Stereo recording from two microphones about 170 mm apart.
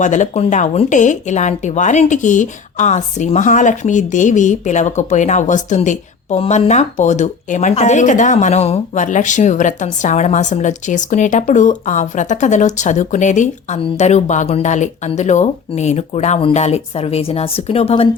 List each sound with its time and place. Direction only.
0.0 s speech: 45° left (ahead or behind)